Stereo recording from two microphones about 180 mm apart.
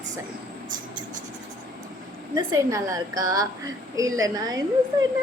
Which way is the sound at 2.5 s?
20° right (ahead or behind).